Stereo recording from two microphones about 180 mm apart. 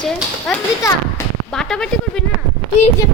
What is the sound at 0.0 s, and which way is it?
A woman's voice, 5° left (ahead or behind).